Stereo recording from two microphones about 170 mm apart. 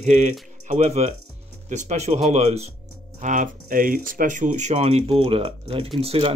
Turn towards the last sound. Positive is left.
turn(degrees=-35)  # may be behind; listen again after turning